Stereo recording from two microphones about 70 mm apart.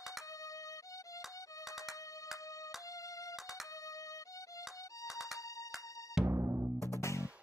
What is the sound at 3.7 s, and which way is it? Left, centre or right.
Music, left.